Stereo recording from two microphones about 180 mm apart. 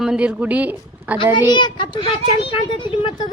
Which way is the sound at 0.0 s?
5° right (ahead or behind).